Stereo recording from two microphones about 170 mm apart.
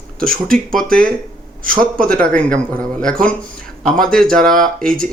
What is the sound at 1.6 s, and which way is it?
Speech, 55° right (ahead or behind).